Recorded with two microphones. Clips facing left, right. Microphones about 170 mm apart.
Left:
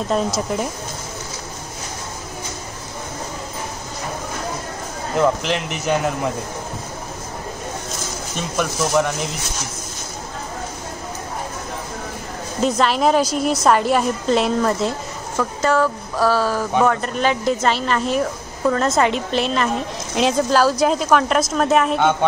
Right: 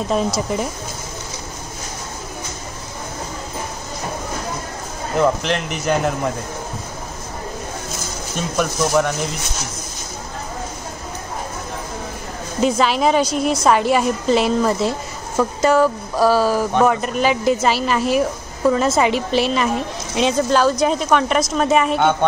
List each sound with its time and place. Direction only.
0.1 s a woman's voice: centre (ahead or behind)
5.1 s a woman's voice: centre (ahead or behind)
8.4 s a woman's voice: centre (ahead or behind)
12.6 s a woman's voice: centre (ahead or behind)